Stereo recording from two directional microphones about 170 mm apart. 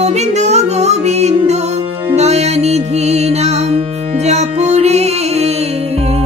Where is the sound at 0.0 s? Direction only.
40° right (ahead or behind).